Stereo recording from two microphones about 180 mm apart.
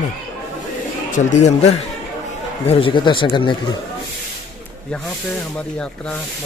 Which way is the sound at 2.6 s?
30° left (ahead or behind).